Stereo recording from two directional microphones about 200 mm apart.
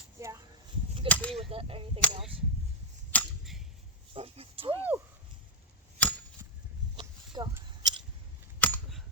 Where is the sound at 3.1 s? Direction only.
5° left (ahead or behind).